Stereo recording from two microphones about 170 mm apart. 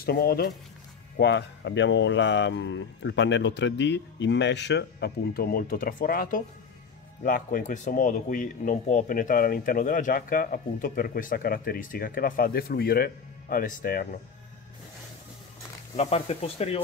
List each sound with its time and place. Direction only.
0.0 s speech: 65° left (ahead or behind)
1.1 s speech: 85° left; by 14.0 s 60° left (ahead or behind)
16.0 s speech: 40° left (ahead or behind)